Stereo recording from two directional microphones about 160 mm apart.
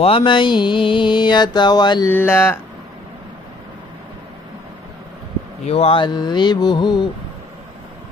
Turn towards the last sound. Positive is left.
turn(degrees=25)  # may be behind; listen again after turning